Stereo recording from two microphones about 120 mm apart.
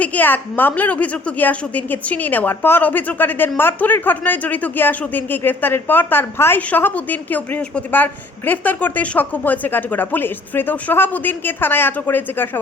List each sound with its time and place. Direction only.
0.0 s speech: 15° left (ahead or behind)